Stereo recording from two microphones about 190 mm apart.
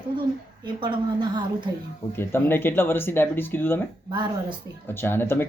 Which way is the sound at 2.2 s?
10° left (ahead or behind).